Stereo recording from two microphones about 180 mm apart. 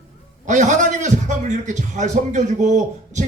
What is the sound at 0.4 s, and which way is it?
A man's voice, 40° right (ahead or behind).